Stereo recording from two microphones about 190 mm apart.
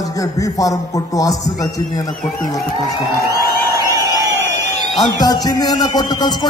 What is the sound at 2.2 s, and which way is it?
Speech, 45° left (ahead or behind).